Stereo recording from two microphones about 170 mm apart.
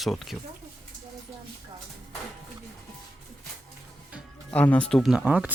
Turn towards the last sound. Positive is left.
turn(degrees=-10)  # may be behind; listen again after turning